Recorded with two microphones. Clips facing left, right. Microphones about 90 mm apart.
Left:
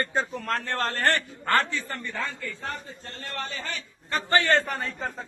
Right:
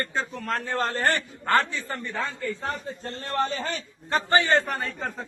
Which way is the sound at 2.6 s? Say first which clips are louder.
Right 4 dB; 30° right (ahead or behind).